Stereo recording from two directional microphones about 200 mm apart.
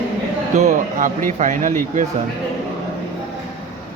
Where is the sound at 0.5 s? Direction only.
40° right (ahead or behind).